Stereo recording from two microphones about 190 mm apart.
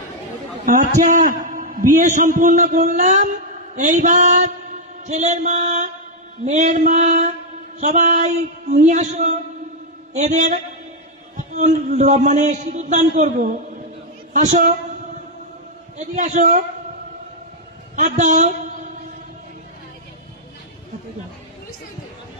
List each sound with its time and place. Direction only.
0.7 s a man's voice: 45° right (ahead or behind)
16.0 s a man's voice: 40° right (ahead or behind)
17.9 s a man's voice: 40° right (ahead or behind)